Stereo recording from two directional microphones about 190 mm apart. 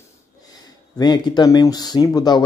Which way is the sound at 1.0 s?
20° left (ahead or behind).